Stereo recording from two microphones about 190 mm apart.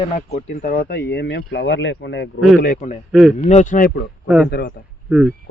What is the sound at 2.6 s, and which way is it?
Speech, 40° left (ahead or behind).